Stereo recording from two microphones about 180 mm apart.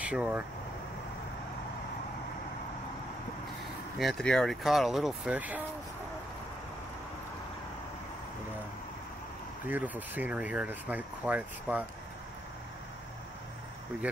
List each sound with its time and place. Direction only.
0.0 s speech: 5° right (ahead or behind)
4.0 s speech: 5° left (ahead or behind)
9.7 s speech: 10° right (ahead or behind)